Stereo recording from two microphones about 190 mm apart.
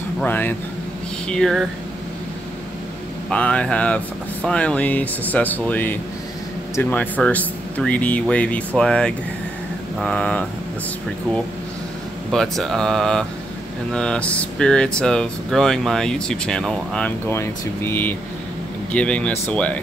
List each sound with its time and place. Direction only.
0.2 s speech: 10° left (ahead or behind)
3.3 s speech: 5° left (ahead or behind)
12.3 s speech: centre (ahead or behind)